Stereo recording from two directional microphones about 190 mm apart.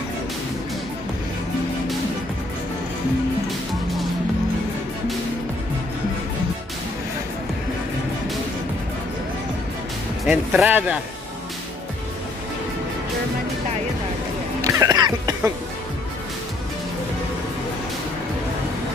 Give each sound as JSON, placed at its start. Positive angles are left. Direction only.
{"t": 10.2, "sound": "speech", "side_deg": -5}
{"t": 14.6, "sound": "music", "side_deg": -15}